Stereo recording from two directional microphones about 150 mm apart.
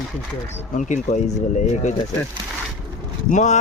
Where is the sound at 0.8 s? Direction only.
55° left (ahead or behind).